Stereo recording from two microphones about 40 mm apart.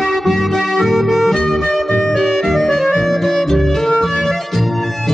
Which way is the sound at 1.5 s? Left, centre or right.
Centre.